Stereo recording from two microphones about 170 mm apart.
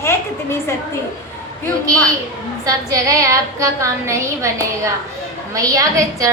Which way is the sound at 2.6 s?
20° right (ahead or behind).